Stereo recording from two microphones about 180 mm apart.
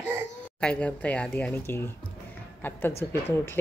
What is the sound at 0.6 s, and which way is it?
Speech, 5° left (ahead or behind).